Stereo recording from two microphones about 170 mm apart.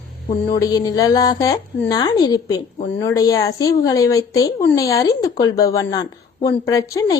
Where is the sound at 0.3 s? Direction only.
20° left (ahead or behind).